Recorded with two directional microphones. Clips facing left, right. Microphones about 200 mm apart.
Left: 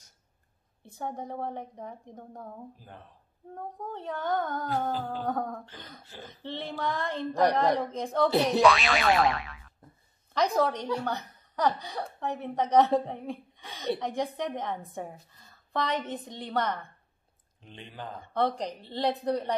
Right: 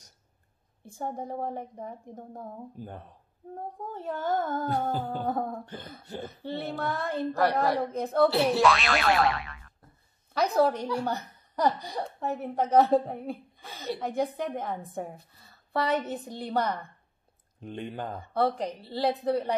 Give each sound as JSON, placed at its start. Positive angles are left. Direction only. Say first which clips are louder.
{"t": 0.8, "sound": "speech", "louder": "right 2 dB", "side_deg": -10}
{"t": 3.5, "sound": "speech", "louder": "even", "side_deg": -10}
{"t": 8.6, "sound": "boing", "louder": "left 1 dB", "side_deg": 0}
{"t": 10.3, "sound": "a woman's voice", "louder": "right 2 dB", "side_deg": -5}
{"t": 17.6, "sound": "speech", "louder": "right 9 dB", "side_deg": -50}
{"t": 18.3, "sound": "speech", "louder": "right 1 dB", "side_deg": -5}